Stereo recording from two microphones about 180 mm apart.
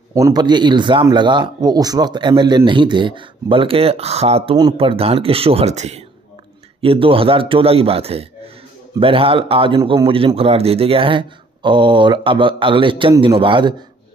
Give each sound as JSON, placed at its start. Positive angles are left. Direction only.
{"t": 0.1, "sound": "speech", "side_deg": -20}